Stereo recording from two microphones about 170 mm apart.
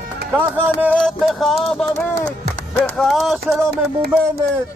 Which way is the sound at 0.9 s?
5° left (ahead or behind).